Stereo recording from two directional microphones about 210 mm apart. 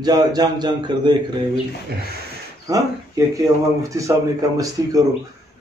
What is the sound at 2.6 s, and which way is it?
A man's voice, 15° right (ahead or behind).